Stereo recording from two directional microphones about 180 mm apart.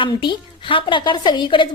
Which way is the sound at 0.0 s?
25° left (ahead or behind).